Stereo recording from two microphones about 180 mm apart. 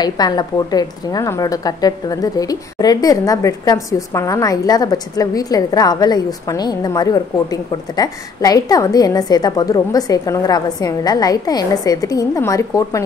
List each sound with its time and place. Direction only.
0.0 s a woman's voice: 20° left (ahead or behind)